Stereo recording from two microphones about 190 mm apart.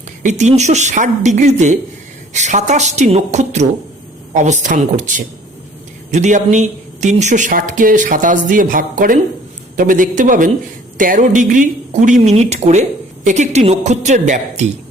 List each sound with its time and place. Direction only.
0.2 s a woman's voice: 40° right (ahead or behind)